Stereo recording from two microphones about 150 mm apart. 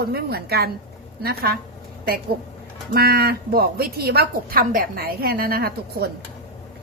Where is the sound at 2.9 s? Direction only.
90° right.